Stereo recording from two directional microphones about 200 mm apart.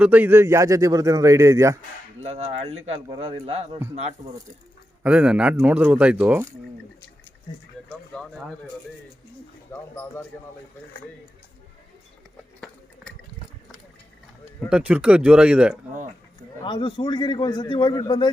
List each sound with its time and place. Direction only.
0.0 s a man's voice: 10° right (ahead or behind)
2.2 s speech: 30° right (ahead or behind)
5.0 s a man's voice: 5° right (ahead or behind)
7.5 s a man's voice: 25° left (ahead or behind)
12.5 s liquid: 5° left (ahead or behind)
14.7 s speech: 5° right (ahead or behind)
16.6 s a man's voice: 25° left (ahead or behind)